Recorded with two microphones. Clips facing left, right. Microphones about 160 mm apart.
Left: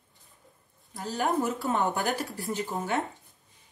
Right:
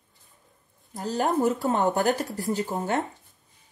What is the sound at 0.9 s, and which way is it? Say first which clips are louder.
A woman's voice: right 3 dB; 40° right (ahead or behind).